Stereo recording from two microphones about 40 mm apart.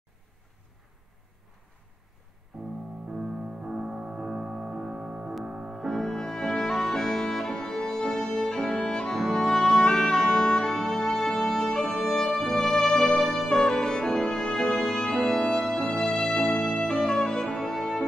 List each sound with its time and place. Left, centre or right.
2.5 s music: centre
5.9 s music: centre
13.5 s music: centre
16.8 s music: centre